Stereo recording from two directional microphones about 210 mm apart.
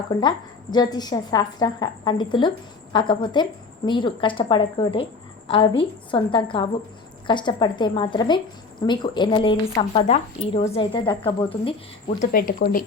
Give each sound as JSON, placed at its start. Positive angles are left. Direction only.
{"t": 0.1, "sound": "speech", "side_deg": 20}
{"t": 12.0, "sound": "speech", "side_deg": 40}